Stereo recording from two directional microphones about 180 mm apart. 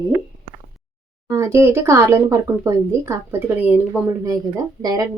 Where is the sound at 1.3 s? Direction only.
15° right (ahead or behind).